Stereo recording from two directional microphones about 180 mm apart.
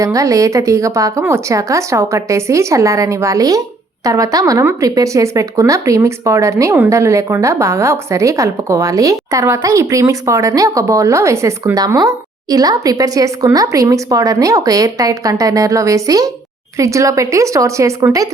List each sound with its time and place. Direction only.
0.0 s speech: 20° right (ahead or behind)